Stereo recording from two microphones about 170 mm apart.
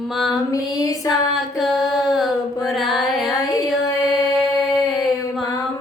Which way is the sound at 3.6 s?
Centre (ahead or behind).